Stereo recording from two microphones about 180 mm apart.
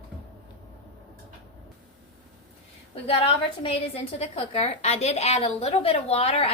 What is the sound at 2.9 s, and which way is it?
A woman's voice, 35° left (ahead or behind).